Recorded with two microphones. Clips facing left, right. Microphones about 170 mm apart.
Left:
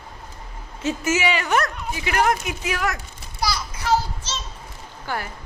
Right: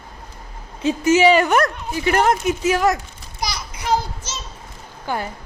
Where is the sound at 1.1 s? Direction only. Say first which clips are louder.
Right 9 dB; 35° right (ahead or behind).